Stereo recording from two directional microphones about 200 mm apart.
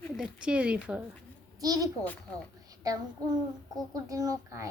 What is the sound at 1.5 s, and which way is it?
A child's voice, 20° right (ahead or behind).